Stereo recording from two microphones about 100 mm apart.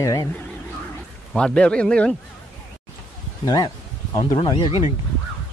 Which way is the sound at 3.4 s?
45° left (ahead or behind).